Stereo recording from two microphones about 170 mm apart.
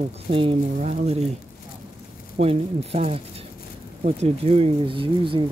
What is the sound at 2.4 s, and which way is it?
Speech, 35° right (ahead or behind).